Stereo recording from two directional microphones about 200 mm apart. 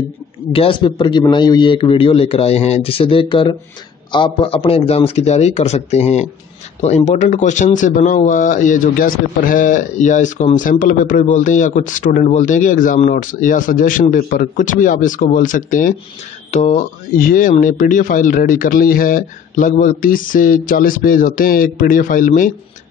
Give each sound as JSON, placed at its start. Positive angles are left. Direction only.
{"t": 0.5, "sound": "a man's voice", "side_deg": 25}